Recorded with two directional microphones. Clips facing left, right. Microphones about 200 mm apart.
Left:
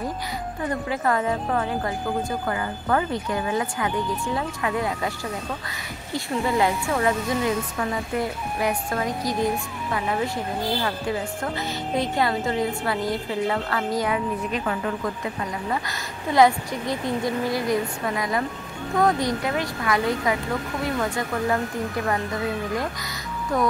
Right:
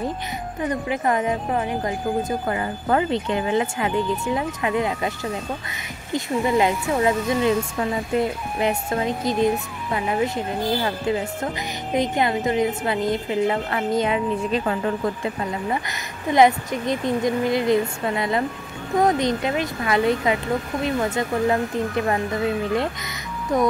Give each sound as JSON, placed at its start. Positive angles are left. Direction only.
{"t": 0.7, "sound": "speech", "side_deg": -20}
{"t": 6.1, "sound": "speech", "side_deg": -20}
{"t": 23.5, "sound": "speech", "side_deg": -20}